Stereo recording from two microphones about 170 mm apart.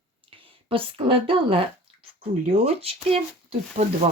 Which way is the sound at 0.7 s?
30° right (ahead or behind).